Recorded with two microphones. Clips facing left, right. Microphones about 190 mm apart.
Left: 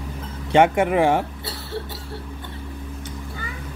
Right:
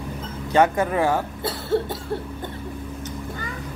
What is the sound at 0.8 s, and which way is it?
Speech, 25° left (ahead or behind).